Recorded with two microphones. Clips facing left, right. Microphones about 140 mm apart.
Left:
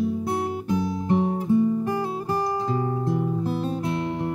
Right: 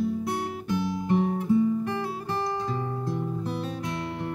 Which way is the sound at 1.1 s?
20° left (ahead or behind).